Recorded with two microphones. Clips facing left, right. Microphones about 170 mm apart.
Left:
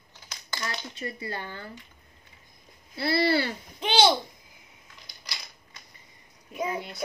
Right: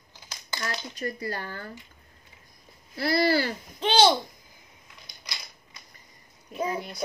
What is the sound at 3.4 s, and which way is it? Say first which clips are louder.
Speech: right 1 dB; 35° right (ahead or behind).